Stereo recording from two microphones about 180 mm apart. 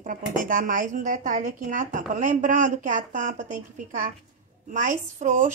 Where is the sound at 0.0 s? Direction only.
50° right (ahead or behind).